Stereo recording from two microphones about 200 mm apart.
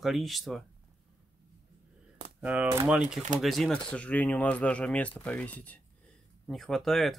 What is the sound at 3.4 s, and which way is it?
Speech, centre (ahead or behind).